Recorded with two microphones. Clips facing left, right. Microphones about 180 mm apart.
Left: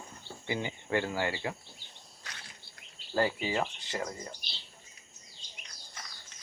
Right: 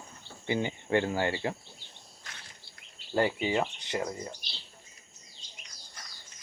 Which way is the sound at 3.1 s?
20° right (ahead or behind).